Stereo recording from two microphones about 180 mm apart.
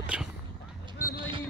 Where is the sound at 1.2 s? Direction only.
30° right (ahead or behind).